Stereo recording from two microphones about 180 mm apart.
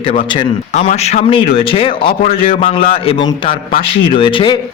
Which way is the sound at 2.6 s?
30° left (ahead or behind).